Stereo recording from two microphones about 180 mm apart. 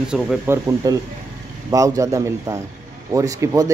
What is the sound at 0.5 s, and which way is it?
Speech, 15° right (ahead or behind).